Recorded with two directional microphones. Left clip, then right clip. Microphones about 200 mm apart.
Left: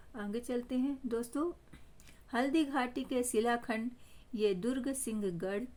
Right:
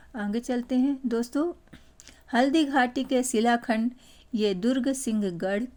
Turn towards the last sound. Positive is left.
turn(degrees=-30)  # may be behind; listen again after turning